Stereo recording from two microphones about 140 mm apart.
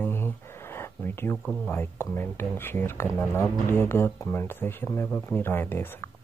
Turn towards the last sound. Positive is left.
turn(degrees=15)  # may be behind; listen again after turning